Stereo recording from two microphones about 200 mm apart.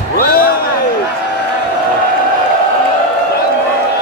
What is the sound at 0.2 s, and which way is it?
Basketball bounce, 50° left (ahead or behind).